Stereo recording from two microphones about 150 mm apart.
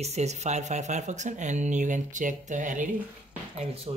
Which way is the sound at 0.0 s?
50° right (ahead or behind).